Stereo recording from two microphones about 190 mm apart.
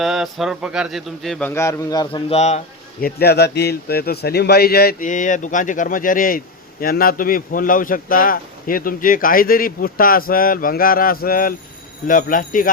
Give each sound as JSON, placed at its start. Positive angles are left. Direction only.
{"t": 0.0, "sound": "a man's voice", "side_deg": 0}
{"t": 2.3, "sound": "speech", "side_deg": 35}
{"t": 3.0, "sound": "a man's voice", "side_deg": 55}